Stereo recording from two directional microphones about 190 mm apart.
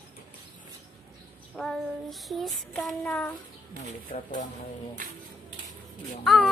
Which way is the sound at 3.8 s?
40° left (ahead or behind).